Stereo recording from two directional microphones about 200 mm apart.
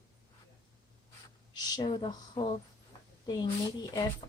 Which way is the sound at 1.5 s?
20° left (ahead or behind).